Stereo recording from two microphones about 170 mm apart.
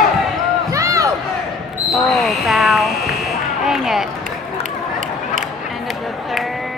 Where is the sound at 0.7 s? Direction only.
20° right (ahead or behind).